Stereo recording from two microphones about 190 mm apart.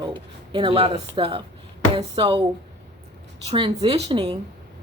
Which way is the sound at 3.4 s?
30° right (ahead or behind).